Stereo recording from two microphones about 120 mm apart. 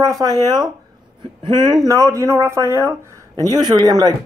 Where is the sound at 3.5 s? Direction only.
35° right (ahead or behind).